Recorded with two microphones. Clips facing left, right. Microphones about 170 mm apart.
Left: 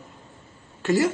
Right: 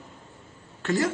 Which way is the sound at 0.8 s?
10° left (ahead or behind).